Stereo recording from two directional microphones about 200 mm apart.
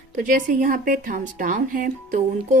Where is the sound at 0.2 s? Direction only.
40° right (ahead or behind).